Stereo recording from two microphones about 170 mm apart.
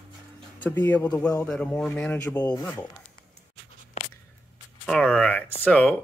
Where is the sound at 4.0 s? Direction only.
35° left (ahead or behind).